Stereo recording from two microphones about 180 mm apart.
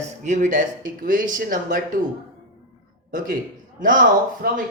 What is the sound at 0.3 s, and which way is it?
Speech, 45° right (ahead or behind).